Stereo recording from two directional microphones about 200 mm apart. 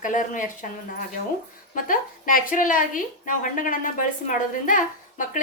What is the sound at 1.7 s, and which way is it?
A woman's voice, 45° left (ahead or behind).